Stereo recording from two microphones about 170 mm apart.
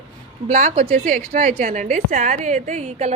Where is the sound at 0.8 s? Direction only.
50° right (ahead or behind).